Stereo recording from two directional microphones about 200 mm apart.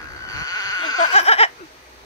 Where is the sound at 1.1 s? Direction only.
30° left (ahead or behind).